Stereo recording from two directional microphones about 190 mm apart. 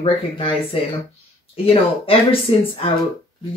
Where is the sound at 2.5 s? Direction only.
30° left (ahead or behind).